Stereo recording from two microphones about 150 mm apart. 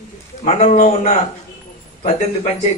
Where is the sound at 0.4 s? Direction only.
50° left (ahead or behind).